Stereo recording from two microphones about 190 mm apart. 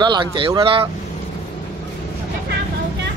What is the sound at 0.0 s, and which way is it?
Speech, 25° right (ahead or behind).